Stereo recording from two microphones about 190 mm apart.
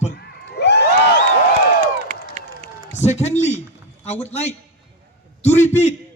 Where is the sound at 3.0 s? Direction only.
35° left (ahead or behind).